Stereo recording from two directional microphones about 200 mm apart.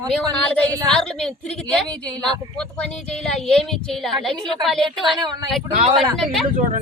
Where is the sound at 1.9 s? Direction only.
20° right (ahead or behind).